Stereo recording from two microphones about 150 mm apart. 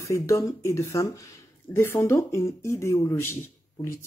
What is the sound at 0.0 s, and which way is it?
Speech, 20° left (ahead or behind).